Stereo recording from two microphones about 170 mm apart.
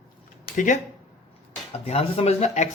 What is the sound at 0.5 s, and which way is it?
Speech, 45° left (ahead or behind).